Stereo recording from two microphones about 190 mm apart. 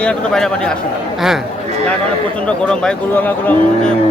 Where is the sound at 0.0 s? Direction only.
5° left (ahead or behind).